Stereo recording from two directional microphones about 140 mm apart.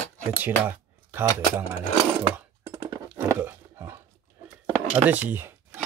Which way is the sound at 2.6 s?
20° right (ahead or behind).